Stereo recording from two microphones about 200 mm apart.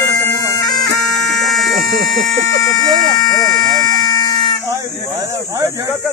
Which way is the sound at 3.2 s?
20° left (ahead or behind).